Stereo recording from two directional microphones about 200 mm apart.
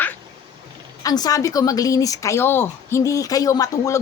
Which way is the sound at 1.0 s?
20° left (ahead or behind).